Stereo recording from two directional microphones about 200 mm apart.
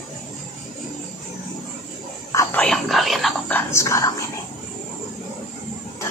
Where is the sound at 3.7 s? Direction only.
15° left (ahead or behind).